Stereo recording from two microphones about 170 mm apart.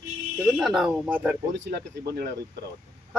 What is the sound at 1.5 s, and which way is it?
Speech, 80° right.